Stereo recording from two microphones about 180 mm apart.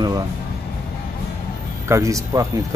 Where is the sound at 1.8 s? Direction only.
15° right (ahead or behind).